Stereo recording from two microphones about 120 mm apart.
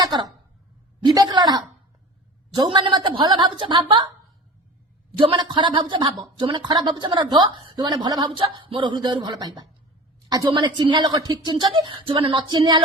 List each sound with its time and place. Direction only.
0.0 s speech: 35° right (ahead or behind)
2.7 s speech: 40° right (ahead or behind)
5.1 s speech: 45° right (ahead or behind)